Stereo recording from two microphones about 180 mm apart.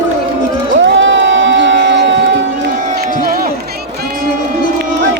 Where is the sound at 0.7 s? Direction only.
90° right; by 3.5 s 55° right (ahead or behind).